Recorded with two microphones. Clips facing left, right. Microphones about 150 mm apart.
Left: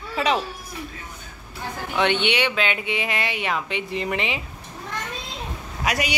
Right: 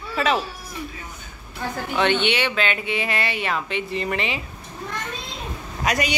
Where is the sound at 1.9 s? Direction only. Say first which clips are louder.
Right 1 dB; 15° left (ahead or behind).